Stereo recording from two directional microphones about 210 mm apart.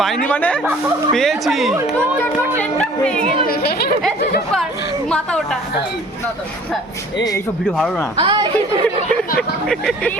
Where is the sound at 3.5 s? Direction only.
45° left (ahead or behind).